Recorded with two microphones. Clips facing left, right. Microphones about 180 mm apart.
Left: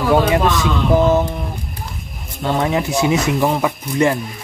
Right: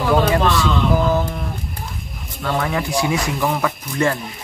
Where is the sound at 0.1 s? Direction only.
15° left (ahead or behind).